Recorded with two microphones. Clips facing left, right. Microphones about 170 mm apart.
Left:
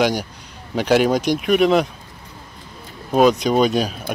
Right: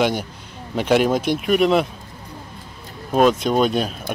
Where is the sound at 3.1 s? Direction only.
Centre (ahead or behind).